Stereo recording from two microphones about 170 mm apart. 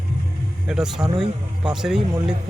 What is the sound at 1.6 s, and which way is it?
Speech, 5° right (ahead or behind).